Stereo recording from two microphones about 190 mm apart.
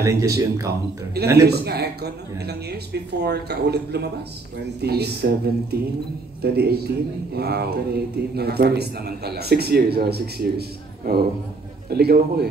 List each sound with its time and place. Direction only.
0.0 s speech: 15° right (ahead or behind)
1.4 s speech: 55° right (ahead or behind)